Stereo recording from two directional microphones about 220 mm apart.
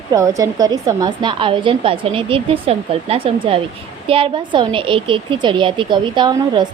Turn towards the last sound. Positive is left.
turn(degrees=-20)  # may be behind; listen again after turning